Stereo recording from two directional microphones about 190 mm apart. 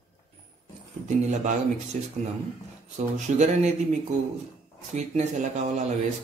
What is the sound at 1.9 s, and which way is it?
Speech, 40° right (ahead or behind).